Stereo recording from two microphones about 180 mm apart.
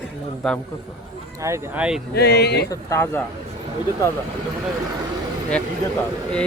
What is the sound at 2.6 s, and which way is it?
Speech, 15° left (ahead or behind).